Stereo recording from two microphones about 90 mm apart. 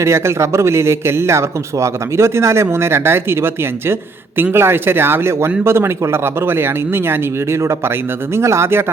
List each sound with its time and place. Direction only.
0.0 s a man's voice: 30° right (ahead or behind)